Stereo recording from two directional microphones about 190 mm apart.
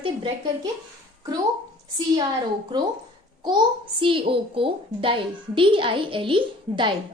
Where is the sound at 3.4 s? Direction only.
25° right (ahead or behind).